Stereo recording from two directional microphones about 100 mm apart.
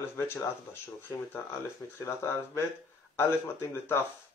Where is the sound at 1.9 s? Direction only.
30° left (ahead or behind).